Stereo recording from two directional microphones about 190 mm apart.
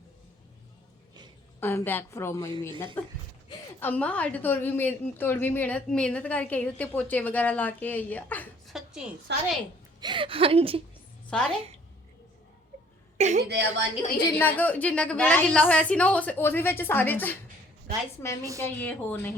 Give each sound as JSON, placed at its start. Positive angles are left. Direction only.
{"t": 1.6, "sound": "a woman's voice", "side_deg": 10}
{"t": 9.3, "sound": "a woman's voice", "side_deg": -65}
{"t": 10.0, "sound": "speech", "side_deg": -25}
{"t": 11.3, "sound": "a woman's voice", "side_deg": 5}
{"t": 13.1, "sound": "a woman's voice", "side_deg": -35}
{"t": 13.5, "sound": "a woman's voice", "side_deg": -60}
{"t": 14.3, "sound": "a woman's voice", "side_deg": 10}
{"t": 18.6, "sound": "a woman's voice", "side_deg": 10}